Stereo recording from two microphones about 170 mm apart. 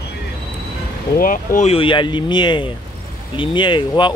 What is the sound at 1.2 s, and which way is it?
Speech, 50° left (ahead or behind).